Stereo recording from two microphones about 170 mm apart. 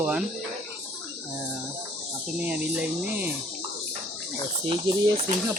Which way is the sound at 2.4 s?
10° right (ahead or behind).